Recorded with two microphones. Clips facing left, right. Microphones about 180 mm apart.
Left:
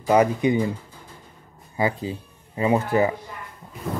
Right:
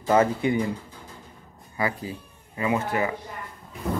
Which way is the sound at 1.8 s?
25° left (ahead or behind).